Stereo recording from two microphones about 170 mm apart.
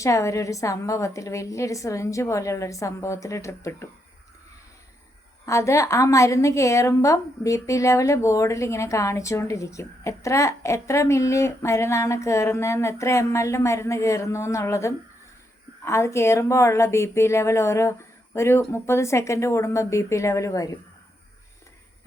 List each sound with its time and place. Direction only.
0.0 s a woman's voice: 15° left (ahead or behind)
5.5 s a woman's voice: 15° left (ahead or behind)